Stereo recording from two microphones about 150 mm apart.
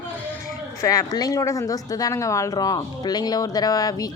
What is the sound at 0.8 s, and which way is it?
Speech, 25° left (ahead or behind).